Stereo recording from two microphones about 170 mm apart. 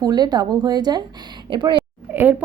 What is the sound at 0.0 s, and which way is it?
A woman's voice, 25° right (ahead or behind).